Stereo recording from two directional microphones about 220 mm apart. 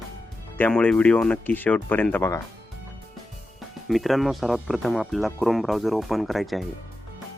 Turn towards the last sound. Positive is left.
turn(degrees=0)  # may be behind; listen again after turning